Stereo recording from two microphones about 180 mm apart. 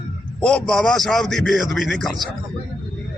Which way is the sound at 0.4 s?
5° left (ahead or behind).